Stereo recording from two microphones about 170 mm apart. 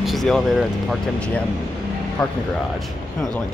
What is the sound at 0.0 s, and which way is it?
Speech, centre (ahead or behind).